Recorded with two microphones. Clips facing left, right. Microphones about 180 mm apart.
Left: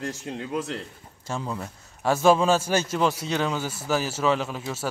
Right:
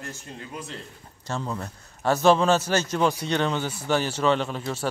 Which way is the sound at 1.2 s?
5° left (ahead or behind).